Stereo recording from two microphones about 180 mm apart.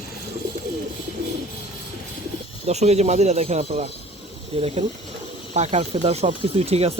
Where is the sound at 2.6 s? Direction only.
35° right (ahead or behind).